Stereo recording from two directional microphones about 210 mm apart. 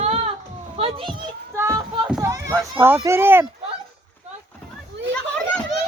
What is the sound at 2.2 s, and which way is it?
Children playing, 15° right (ahead or behind).